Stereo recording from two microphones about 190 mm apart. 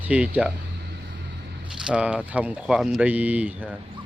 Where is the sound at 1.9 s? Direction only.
5° right (ahead or behind).